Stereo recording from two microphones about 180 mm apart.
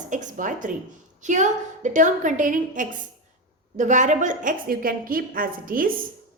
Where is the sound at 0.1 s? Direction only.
45° right (ahead or behind).